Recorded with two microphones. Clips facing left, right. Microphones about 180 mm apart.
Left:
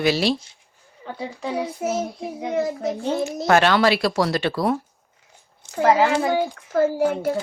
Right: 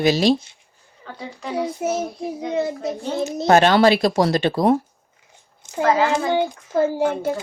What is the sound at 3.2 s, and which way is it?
Speech, 20° right (ahead or behind).